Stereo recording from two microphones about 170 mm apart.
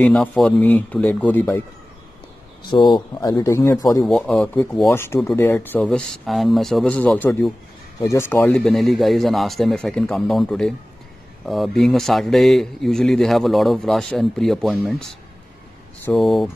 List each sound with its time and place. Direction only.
0.0 s speech: 5° left (ahead or behind)
2.7 s a man's voice: 25° left (ahead or behind)
4.0 s a man's voice: centre (ahead or behind)
4.8 s a man's voice: 15° left (ahead or behind)